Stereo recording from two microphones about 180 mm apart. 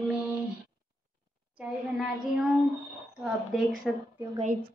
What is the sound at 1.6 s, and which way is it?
Speech, 5° right (ahead or behind).